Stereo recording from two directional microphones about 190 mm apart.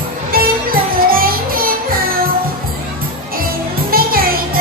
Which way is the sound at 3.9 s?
50° right (ahead or behind).